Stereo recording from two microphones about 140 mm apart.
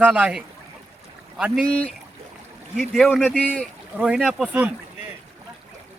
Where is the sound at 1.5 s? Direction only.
5° left (ahead or behind).